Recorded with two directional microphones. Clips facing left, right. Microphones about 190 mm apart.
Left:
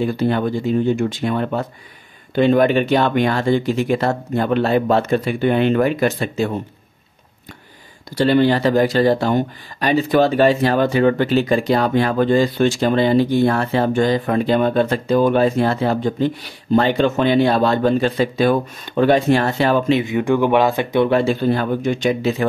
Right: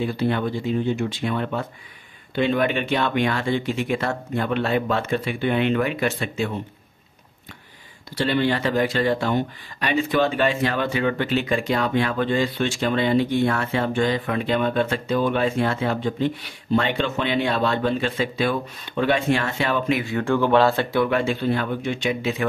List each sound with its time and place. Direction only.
0.0 s speech: 45° left (ahead or behind)
8.2 s speech: 40° left (ahead or behind)
20.0 s speech: 20° left (ahead or behind)
21.1 s speech: 35° left (ahead or behind)